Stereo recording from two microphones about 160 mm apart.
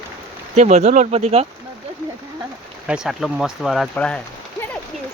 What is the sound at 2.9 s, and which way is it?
Speech, 5° right (ahead or behind).